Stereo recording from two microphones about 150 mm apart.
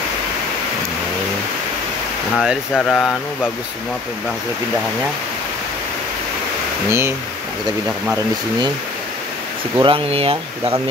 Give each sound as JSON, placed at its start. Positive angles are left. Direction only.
{"t": 2.3, "sound": "speech", "side_deg": -5}
{"t": 6.9, "sound": "speech", "side_deg": -15}
{"t": 9.8, "sound": "speech", "side_deg": -35}